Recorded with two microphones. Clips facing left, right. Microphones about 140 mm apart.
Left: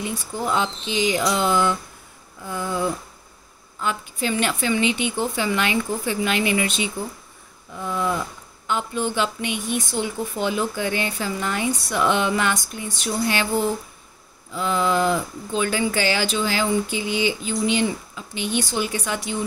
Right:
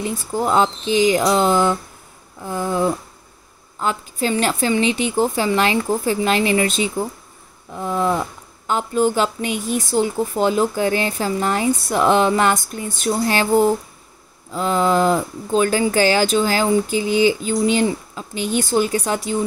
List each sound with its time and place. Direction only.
0.0 s speech: 40° right (ahead or behind)